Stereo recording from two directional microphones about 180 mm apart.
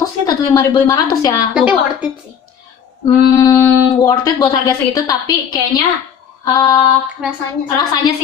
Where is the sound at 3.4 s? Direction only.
20° left (ahead or behind).